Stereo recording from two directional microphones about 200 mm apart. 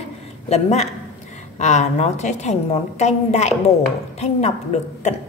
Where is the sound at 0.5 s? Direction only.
30° left (ahead or behind).